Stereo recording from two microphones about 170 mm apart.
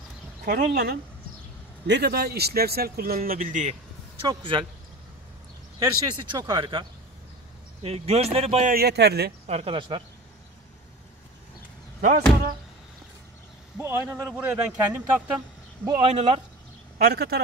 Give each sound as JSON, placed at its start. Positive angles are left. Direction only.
{"t": 0.5, "sound": "speech", "side_deg": -70}
{"t": 4.2, "sound": "speech", "side_deg": -30}
{"t": 5.8, "sound": "speech", "side_deg": -25}
{"t": 8.6, "sound": "speech", "side_deg": -65}
{"t": 9.5, "sound": "speech", "side_deg": -35}
{"t": 12.0, "sound": "speech", "side_deg": -50}
{"t": 13.7, "sound": "a man's voice", "side_deg": -15}
{"t": 15.8, "sound": "speech", "side_deg": -20}
{"t": 16.1, "sound": "speech", "side_deg": -35}
{"t": 17.0, "sound": "speech", "side_deg": -65}